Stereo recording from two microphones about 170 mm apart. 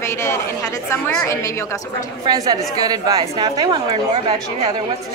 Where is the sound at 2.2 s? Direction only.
25° right (ahead or behind).